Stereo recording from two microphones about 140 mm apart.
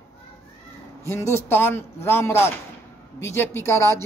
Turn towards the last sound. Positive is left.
turn(degrees=20)  # may be behind; listen again after turning